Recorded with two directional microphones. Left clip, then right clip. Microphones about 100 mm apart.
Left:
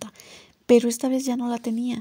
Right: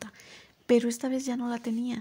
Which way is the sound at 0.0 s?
45° left (ahead or behind).